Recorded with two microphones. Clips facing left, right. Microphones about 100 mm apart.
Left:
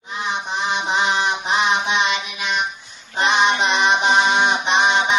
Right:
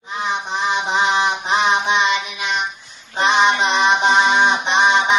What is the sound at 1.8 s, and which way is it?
Music, 35° right (ahead or behind).